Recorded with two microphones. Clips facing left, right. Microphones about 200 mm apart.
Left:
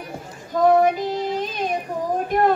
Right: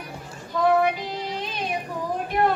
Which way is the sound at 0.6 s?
45° left (ahead or behind).